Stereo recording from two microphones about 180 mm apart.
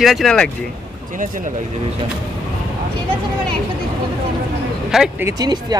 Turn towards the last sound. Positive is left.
turn(degrees=-20)  # may be behind; listen again after turning